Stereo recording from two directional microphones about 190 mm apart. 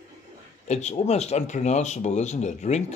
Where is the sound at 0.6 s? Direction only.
35° left (ahead or behind).